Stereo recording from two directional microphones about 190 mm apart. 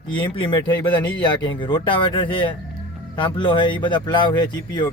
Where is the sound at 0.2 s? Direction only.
25° left (ahead or behind).